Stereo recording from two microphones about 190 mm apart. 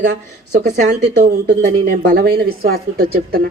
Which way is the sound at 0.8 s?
40° right (ahead or behind).